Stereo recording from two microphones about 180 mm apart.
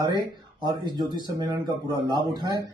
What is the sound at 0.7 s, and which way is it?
Speech, 25° right (ahead or behind).